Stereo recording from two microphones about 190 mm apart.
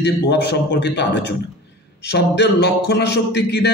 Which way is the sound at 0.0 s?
60° left (ahead or behind).